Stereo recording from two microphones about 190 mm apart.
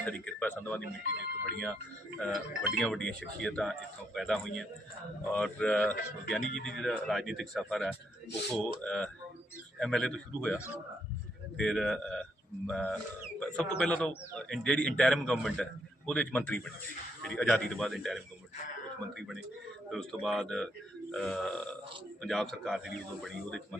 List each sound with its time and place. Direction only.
0.0 s a man's voice: 5° left (ahead or behind)
1.0 s speech: 55° right (ahead or behind)
2.2 s a man's voice: 5° left (ahead or behind)
19.9 s a man's voice: centre (ahead or behind)